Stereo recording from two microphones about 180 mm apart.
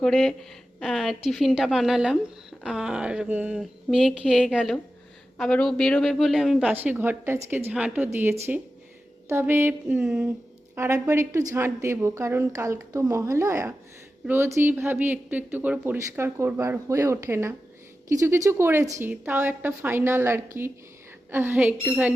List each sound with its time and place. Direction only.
0.0 s speech: centre (ahead or behind)
10.8 s speech: 15° right (ahead or behind)